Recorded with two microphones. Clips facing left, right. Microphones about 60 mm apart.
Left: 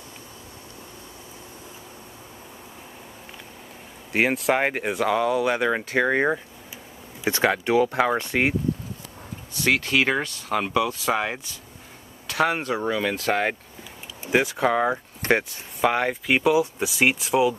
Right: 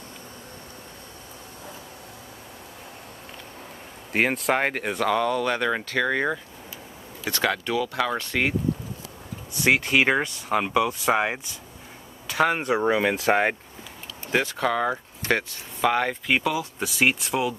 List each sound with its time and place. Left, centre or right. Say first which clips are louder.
4.1 s speech: left 1 dB; centre; by 7.7 s left
7.7 s speech: left 6 dB; left
8.0 s speech: left 3 dB; centre
9.6 s speech: right 1 dB; centre
12.3 s speech: even; centre
12.6 s speech: right 3 dB; centre
14.2 s speech: left 3 dB; centre